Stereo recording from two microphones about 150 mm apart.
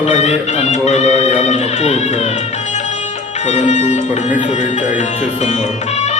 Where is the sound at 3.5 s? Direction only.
50° left (ahead or behind).